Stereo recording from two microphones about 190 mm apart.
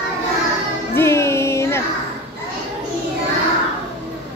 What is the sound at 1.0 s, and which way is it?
Child singing, 15° left (ahead or behind).